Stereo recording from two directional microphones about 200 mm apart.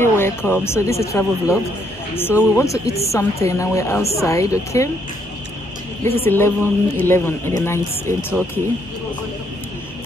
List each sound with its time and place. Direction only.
0.0 s speech: 10° left (ahead or behind)
6.0 s speech: 10° left (ahead or behind)